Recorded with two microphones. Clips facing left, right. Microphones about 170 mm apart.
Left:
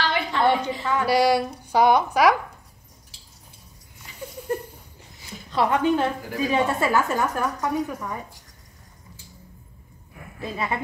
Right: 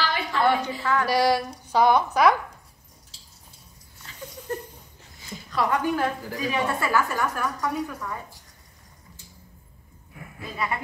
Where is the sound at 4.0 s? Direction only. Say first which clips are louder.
Left 3 dB; 15° left (ahead or behind).